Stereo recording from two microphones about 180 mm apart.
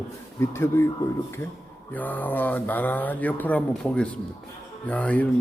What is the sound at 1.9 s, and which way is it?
A man's voice, 10° left (ahead or behind).